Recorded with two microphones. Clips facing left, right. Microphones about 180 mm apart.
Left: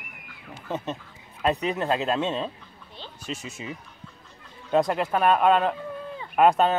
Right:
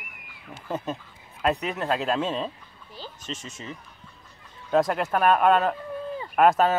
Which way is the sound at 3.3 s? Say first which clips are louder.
Left 3 dB; 10° left (ahead or behind).